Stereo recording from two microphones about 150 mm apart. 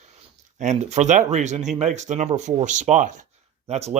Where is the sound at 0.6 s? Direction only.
50° right (ahead or behind).